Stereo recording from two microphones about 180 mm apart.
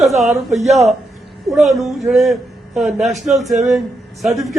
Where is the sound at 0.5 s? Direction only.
40° right (ahead or behind).